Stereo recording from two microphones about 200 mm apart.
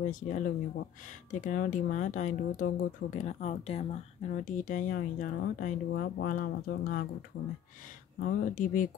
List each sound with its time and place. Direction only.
0.0 s speech: 40° left (ahead or behind)
8.2 s speech: 45° left (ahead or behind)